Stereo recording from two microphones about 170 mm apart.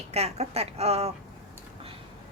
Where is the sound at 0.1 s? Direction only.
40° right (ahead or behind).